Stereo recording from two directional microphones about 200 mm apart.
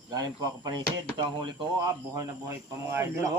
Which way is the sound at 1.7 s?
15° right (ahead or behind).